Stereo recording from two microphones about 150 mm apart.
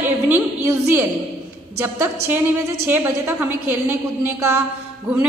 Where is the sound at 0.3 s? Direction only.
15° right (ahead or behind).